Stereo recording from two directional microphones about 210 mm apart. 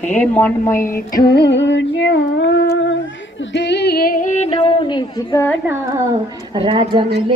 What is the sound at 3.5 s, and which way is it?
Yodeling, 55° left (ahead or behind).